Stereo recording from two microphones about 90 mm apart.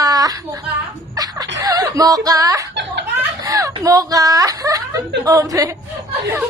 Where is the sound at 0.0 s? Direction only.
45° right (ahead or behind).